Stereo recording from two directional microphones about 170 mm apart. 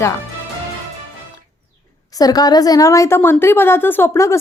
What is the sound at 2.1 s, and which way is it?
A woman's voice, 20° left (ahead or behind).